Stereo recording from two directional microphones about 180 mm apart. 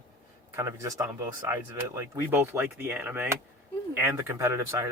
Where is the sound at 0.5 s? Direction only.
15° right (ahead or behind).